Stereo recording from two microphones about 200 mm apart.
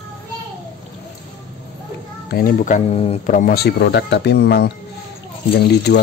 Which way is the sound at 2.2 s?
45° left (ahead or behind).